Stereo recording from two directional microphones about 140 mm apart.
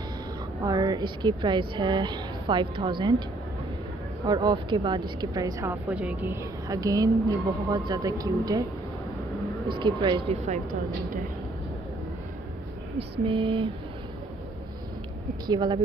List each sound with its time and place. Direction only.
0.7 s a woman's voice: 30° right (ahead or behind)
4.3 s a woman's voice: 30° right (ahead or behind)
5.9 s speech: 10° right (ahead or behind)
6.7 s a woman's voice: 25° right (ahead or behind)
9.8 s a woman's voice: 35° right (ahead or behind); by 10.6 s 50° right (ahead or behind)
13.2 s a woman's voice: 35° right (ahead or behind)
15.4 s a woman's voice: 30° right (ahead or behind)